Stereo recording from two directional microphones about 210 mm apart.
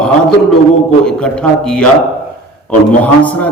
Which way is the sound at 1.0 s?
5° left (ahead or behind).